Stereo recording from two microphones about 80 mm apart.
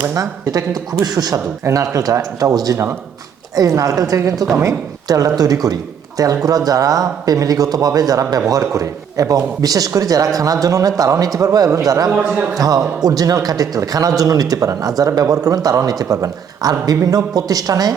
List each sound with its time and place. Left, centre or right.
0.1 s speech: right
1.6 s speech: right